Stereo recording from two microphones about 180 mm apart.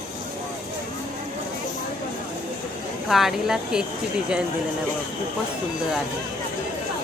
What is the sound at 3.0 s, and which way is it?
Speech, centre (ahead or behind).